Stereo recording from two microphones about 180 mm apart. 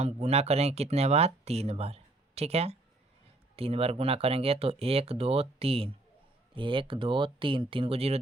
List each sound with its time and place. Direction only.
0.0 s speech: 35° right (ahead or behind)